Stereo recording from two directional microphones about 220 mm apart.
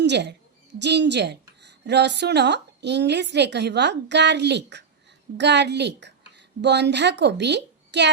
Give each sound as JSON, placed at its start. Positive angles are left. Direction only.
{"t": 0.0, "sound": "a woman's voice", "side_deg": -50}